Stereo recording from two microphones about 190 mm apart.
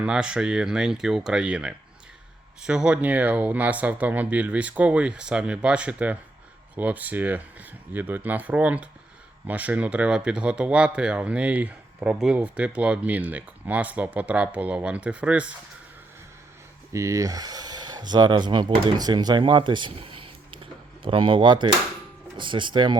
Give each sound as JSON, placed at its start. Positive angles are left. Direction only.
{"t": 0.0, "sound": "speech", "side_deg": -5}
{"t": 16.9, "sound": "speech", "side_deg": -15}